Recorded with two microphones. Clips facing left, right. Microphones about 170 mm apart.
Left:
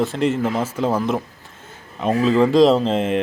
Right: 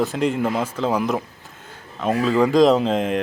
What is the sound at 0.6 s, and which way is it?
Speech, 5° left (ahead or behind).